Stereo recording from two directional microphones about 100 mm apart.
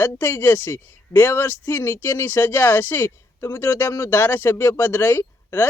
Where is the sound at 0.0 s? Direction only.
25° left (ahead or behind).